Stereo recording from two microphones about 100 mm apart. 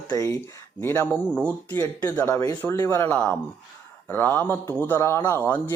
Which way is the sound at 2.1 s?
25° left (ahead or behind).